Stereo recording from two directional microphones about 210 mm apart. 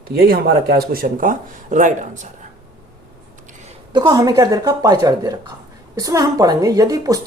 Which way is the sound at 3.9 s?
20° right (ahead or behind).